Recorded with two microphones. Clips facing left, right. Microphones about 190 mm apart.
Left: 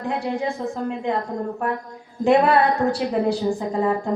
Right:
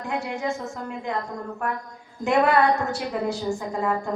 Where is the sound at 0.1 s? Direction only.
35° left (ahead or behind).